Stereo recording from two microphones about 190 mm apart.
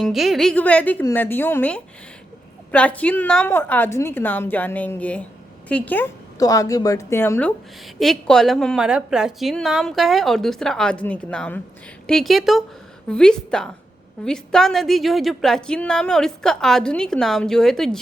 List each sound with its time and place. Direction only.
0.0 s a woman's voice: centre (ahead or behind)